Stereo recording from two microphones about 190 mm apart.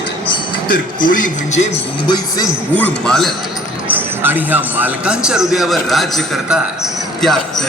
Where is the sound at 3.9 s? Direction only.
10° right (ahead or behind).